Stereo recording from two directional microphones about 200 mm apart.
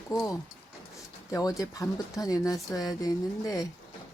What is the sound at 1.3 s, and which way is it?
Speech, 20° left (ahead or behind).